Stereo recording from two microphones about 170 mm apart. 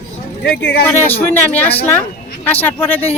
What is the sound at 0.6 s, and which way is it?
Speech, 85° left.